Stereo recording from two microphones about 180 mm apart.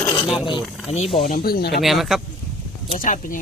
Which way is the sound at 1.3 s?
55° left (ahead or behind).